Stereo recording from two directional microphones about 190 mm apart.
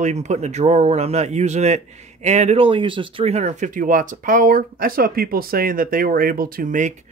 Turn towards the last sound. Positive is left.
turn(degrees=-45)  # may be behind; listen again after turning